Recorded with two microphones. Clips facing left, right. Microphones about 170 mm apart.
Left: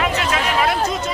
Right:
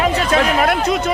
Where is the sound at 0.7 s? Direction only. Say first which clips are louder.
Right 4 dB; 65° right (ahead or behind).